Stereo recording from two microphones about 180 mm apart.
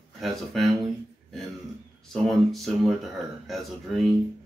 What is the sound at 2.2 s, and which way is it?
Speech, centre (ahead or behind).